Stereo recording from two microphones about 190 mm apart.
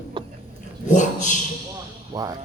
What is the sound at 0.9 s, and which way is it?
Speech, 40° left (ahead or behind).